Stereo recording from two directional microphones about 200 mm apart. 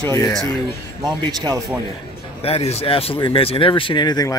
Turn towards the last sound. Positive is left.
turn(degrees=20)  # may be behind; listen again after turning